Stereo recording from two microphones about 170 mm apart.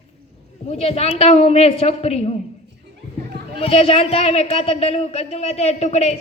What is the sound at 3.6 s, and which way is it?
Speech, 35° left (ahead or behind).